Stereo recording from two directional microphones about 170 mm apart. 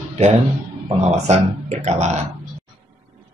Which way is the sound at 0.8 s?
35° right (ahead or behind).